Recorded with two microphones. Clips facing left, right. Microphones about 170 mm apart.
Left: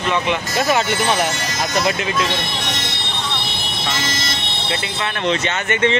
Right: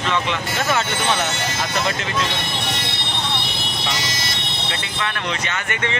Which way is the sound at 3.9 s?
50° left (ahead or behind).